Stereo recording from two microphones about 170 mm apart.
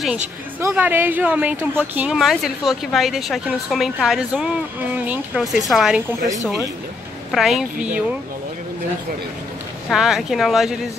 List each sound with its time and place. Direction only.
0.6 s a woman's voice: 10° right (ahead or behind)
7.2 s speech: centre (ahead or behind)
9.8 s speech: centre (ahead or behind)